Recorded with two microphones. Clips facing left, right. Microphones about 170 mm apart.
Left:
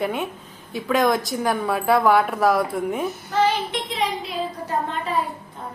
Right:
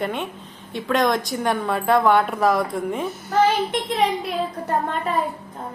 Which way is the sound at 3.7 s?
55° right (ahead or behind).